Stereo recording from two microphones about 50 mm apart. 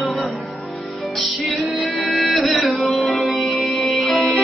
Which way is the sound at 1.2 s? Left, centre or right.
Centre.